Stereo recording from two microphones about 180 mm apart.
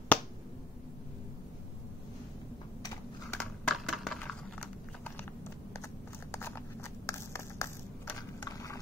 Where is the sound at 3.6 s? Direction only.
Centre (ahead or behind).